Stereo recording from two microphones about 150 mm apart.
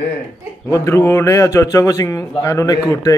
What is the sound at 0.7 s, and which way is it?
A man's voice, 20° left (ahead or behind).